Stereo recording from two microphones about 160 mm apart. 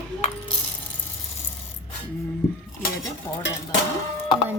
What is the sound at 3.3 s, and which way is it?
Dishes, 20° left (ahead or behind).